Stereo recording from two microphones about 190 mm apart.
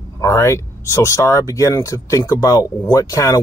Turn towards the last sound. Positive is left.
turn(degrees=20)  # may be behind; listen again after turning